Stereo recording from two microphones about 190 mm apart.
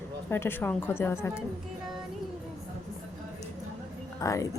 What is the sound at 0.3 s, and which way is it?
A woman's voice, 10° left (ahead or behind).